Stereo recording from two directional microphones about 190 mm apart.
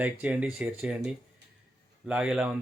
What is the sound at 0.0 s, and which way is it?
Speech, 10° right (ahead or behind).